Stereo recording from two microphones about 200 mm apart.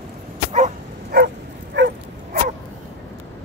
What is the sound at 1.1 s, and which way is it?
Bow-wow, 55° right (ahead or behind).